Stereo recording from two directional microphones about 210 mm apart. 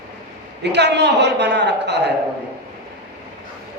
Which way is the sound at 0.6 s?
55° right (ahead or behind).